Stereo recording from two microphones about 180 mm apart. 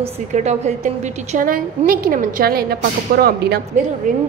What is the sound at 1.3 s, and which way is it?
A woman's voice, 50° right (ahead or behind).